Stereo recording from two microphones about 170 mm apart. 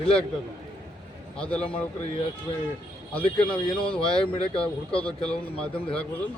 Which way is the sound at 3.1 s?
5° left (ahead or behind).